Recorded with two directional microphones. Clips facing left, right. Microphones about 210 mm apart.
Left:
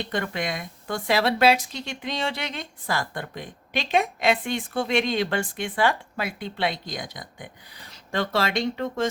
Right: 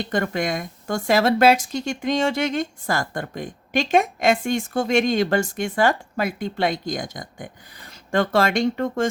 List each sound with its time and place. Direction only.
0.0 s speech: 45° right (ahead or behind)